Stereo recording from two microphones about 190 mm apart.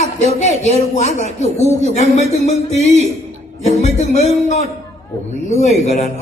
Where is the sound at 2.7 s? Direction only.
35° right (ahead or behind).